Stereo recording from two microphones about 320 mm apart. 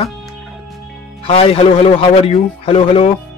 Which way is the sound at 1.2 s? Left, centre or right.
Centre.